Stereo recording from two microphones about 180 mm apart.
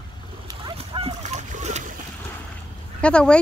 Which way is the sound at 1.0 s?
35° right (ahead or behind).